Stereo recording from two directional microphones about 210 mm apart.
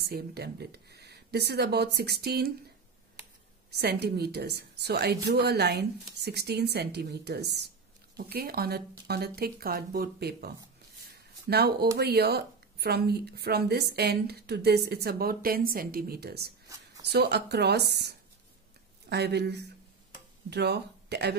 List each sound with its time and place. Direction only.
0.0 s a woman's voice: 50° right (ahead or behind)
3.7 s a woman's voice: 50° right (ahead or behind)